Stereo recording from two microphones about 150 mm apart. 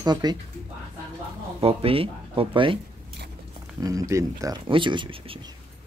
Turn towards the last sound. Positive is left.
turn(degrees=-35)  # may be behind; listen again after turning